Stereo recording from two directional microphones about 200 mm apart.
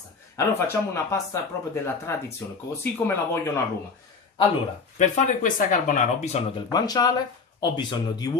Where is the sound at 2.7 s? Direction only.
15° left (ahead or behind).